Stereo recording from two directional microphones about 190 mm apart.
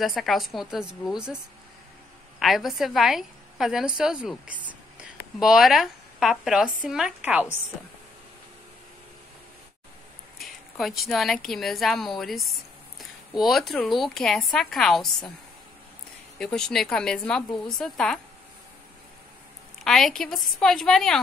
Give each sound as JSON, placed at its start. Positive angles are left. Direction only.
{"t": 0.0, "sound": "a woman's voice", "side_deg": 0}
{"t": 2.4, "sound": "a woman's voice", "side_deg": 0}
{"t": 10.4, "sound": "a woman's voice", "side_deg": 0}
{"t": 16.3, "sound": "a woman's voice", "side_deg": 5}
{"t": 19.8, "sound": "a woman's voice", "side_deg": 0}